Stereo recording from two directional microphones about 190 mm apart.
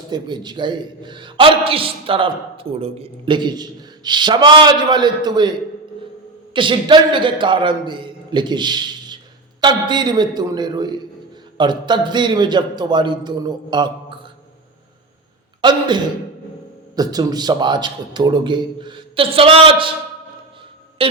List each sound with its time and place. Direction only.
0.1 s a man's voice: 20° right (ahead or behind)
15.6 s a man's voice: 25° right (ahead or behind)
16.9 s a man's voice: 20° right (ahead or behind)
21.0 s speech: 30° right (ahead or behind)